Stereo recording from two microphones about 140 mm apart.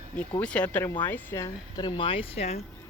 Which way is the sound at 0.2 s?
10° left (ahead or behind).